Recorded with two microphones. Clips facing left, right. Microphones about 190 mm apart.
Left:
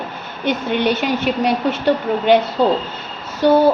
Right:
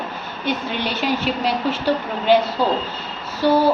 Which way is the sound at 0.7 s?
55° left (ahead or behind).